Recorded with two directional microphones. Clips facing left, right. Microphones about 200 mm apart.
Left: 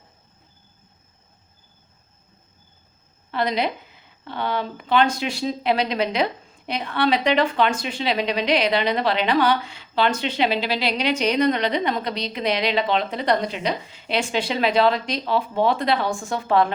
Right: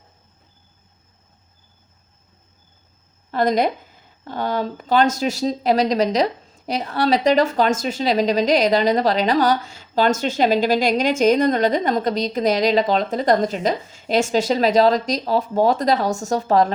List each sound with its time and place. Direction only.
3.3 s speech: 45° right (ahead or behind)